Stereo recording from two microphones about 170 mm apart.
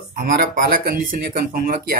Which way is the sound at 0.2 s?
65° right (ahead or behind).